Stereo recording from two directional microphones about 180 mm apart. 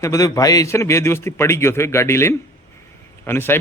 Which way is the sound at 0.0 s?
20° left (ahead or behind).